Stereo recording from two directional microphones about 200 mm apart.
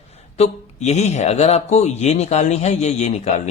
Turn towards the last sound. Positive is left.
turn(degrees=35)  # may be behind; listen again after turning